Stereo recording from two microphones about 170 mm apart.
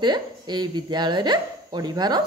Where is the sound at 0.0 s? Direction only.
25° right (ahead or behind).